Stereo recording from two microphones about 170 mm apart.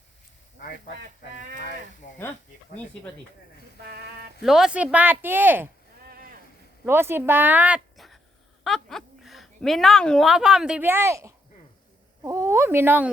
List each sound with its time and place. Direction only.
3.8 s a sound: 65° right (ahead or behind)
4.4 s speech: 5° right (ahead or behind)
6.1 s boat: 60° right (ahead or behind)
6.8 s a woman's voice: 15° right (ahead or behind)